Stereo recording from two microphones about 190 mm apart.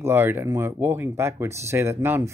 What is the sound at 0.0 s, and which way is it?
Speech, 10° right (ahead or behind).